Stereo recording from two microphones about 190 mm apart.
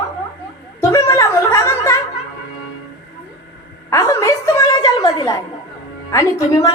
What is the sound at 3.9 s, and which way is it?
A woman's voice, 15° left (ahead or behind).